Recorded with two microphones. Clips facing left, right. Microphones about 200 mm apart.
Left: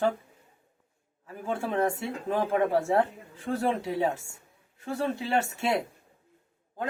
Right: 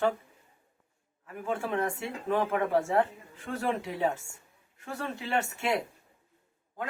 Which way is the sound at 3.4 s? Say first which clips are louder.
Left 4 dB; 35° left (ahead or behind).